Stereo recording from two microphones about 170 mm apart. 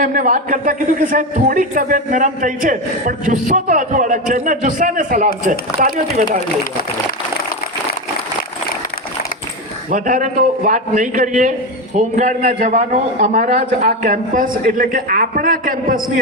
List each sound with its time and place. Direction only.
0.0 s speech: 50° right (ahead or behind)
9.9 s speech: 50° right (ahead or behind)